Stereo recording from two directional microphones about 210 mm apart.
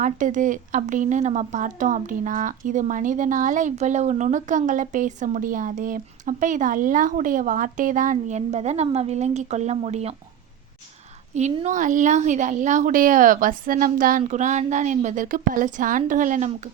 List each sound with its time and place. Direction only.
0.0 s speech: 35° right (ahead or behind)
11.3 s speech: 35° right (ahead or behind)